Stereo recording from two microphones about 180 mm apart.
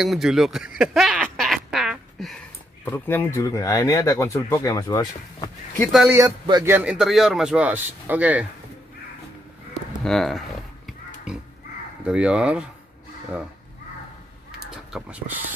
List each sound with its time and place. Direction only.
0.0 s speech: centre (ahead or behind)
0.7 s a sound: centre (ahead or behind)
2.8 s speech: 10° left (ahead or behind)
5.9 s speech: centre (ahead or behind)
6.1 s speech: 20° right (ahead or behind)
6.7 s speech: 5° right (ahead or behind)
10.0 s speech: centre (ahead or behind)
11.3 s oink: 5° right (ahead or behind)
12.0 s speech: 5° right (ahead or behind)
14.9 s speech: 5° right (ahead or behind)